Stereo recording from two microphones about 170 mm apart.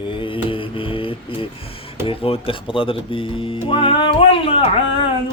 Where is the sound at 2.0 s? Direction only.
35° left (ahead or behind).